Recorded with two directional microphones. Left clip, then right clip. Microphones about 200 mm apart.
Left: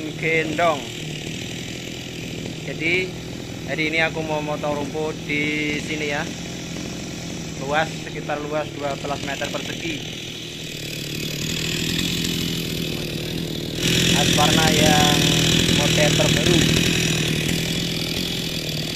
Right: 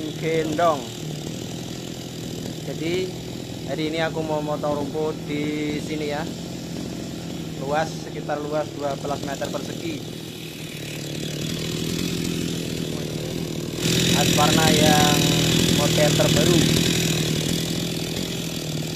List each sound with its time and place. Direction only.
0.2 s speech: centre (ahead or behind)
3.7 s speech: 5° right (ahead or behind)
7.8 s speech: 10° left (ahead or behind)
13.8 s vehicle: 5° right (ahead or behind)
14.6 s speech: 10° left (ahead or behind)
15.0 s speech: 10° right (ahead or behind)
17.5 s chainsaw: 35° left (ahead or behind)